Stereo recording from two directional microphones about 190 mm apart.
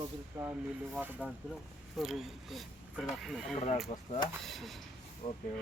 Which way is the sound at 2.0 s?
Centre (ahead or behind).